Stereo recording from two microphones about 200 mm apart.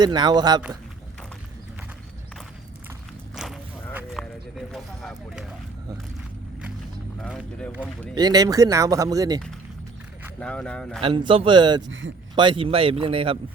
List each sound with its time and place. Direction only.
0.0 s speech: 20° right (ahead or behind)
3.3 s a sound: centre (ahead or behind)
7.2 s speech: centre (ahead or behind)
8.1 s speech: 20° right (ahead or behind)
10.4 s speech: 5° left (ahead or behind)
11.0 s speech: 25° right (ahead or behind)
11.9 s speech: 75° right (ahead or behind)
12.4 s speech: 25° right (ahead or behind)